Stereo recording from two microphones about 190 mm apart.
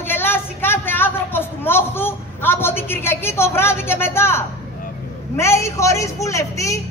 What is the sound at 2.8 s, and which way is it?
A woman's voice, 10° left (ahead or behind).